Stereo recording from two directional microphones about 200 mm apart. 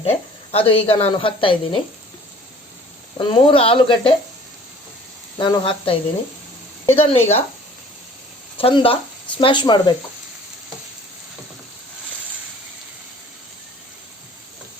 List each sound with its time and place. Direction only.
0.0 s speech: 30° left (ahead or behind)
3.2 s speech: 25° left (ahead or behind)
5.4 s speech: 25° left (ahead or behind)
8.5 s speech: 25° left (ahead or behind)